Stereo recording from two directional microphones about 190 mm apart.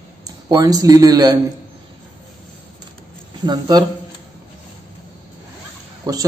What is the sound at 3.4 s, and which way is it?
Speech, 20° right (ahead or behind).